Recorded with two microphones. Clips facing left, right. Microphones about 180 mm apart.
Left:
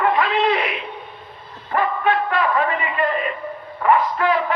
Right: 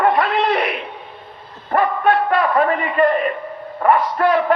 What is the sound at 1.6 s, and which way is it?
A man's voice, 40° right (ahead or behind).